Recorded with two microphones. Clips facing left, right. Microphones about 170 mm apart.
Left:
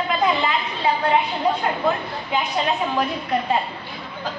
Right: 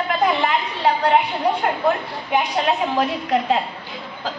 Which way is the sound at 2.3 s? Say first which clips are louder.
Right 3 dB; 65° right (ahead or behind).